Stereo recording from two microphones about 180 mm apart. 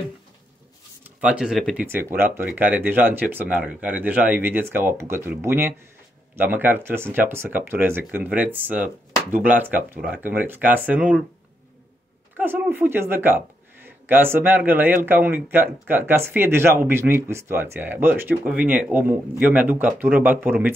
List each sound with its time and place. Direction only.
1.2 s speech: 5° right (ahead or behind)
1.9 s speech: 10° right (ahead or behind)
12.4 s speech: 10° right (ahead or behind)